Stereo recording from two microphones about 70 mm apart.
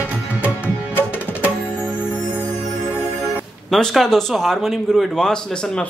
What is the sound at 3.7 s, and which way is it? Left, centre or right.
A man's voice, centre.